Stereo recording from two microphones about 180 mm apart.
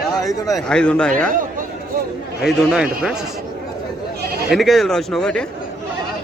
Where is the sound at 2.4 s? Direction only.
5° right (ahead or behind).